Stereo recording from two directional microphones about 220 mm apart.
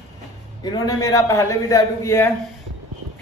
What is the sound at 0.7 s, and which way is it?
A man's voice, 15° left (ahead or behind).